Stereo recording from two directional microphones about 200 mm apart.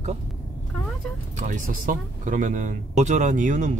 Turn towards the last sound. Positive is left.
turn(degrees=-40)  # may be behind; listen again after turning